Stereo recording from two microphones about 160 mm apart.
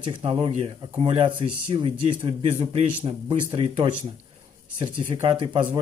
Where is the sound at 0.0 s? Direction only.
35° right (ahead or behind).